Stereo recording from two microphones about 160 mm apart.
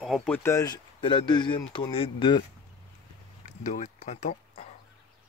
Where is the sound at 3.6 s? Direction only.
50° left (ahead or behind).